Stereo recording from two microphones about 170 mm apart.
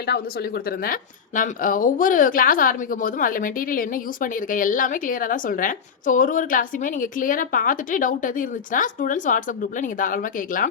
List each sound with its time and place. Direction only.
0.0 s speech: 70° left (ahead or behind); by 10.7 s 55° left (ahead or behind)